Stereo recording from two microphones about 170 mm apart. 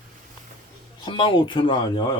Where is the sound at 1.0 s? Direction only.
30° left (ahead or behind).